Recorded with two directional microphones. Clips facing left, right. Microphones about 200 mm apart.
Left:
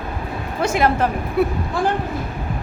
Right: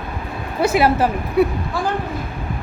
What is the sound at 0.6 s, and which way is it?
Speech, 10° right (ahead or behind).